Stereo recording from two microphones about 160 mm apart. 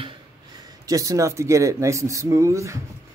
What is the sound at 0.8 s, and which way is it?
Speech, 20° right (ahead or behind).